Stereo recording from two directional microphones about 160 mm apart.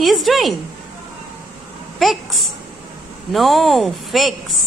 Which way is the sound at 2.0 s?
Centre (ahead or behind).